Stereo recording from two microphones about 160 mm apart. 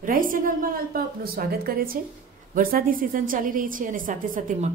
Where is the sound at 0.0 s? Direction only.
60° right (ahead or behind).